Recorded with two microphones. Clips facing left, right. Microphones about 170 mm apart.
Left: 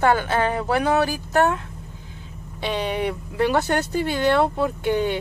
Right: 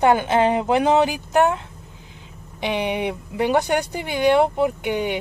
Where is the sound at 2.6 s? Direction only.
15° right (ahead or behind).